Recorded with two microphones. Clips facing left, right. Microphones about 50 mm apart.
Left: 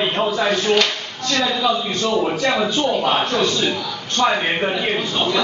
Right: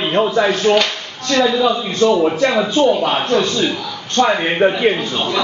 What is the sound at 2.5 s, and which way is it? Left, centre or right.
Speech, centre.